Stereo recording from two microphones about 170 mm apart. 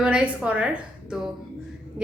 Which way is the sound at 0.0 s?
5° right (ahead or behind).